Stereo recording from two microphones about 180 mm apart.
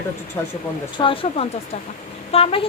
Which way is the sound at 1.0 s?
30° left (ahead or behind).